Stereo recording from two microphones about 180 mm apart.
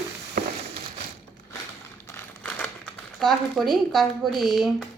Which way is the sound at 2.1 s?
15° left (ahead or behind).